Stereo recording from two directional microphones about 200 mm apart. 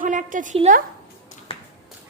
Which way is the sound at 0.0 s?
40° right (ahead or behind).